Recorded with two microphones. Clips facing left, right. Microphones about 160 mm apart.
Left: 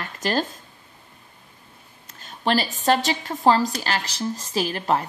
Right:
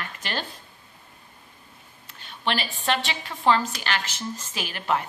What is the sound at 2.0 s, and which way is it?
A woman's voice, 40° left (ahead or behind).